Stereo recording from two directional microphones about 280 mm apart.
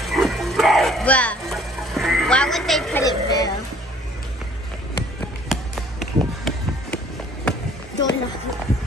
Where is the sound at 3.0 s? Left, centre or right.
Centre.